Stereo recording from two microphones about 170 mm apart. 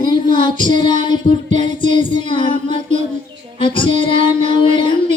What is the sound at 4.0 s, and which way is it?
Music, 30° left (ahead or behind).